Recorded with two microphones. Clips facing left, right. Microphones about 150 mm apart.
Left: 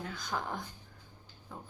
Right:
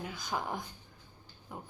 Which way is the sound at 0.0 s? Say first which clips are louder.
Right 1 dB; 10° right (ahead or behind).